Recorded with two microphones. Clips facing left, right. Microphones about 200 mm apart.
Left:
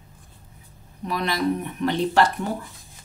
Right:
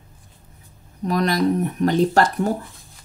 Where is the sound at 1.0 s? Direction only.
45° right (ahead or behind).